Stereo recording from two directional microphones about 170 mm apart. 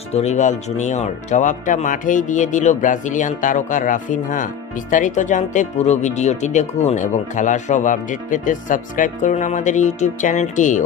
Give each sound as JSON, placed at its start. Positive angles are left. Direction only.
{"t": 0.1, "sound": "speech", "side_deg": 40}